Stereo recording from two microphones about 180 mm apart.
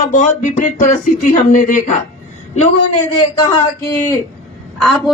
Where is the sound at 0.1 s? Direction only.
45° left (ahead or behind).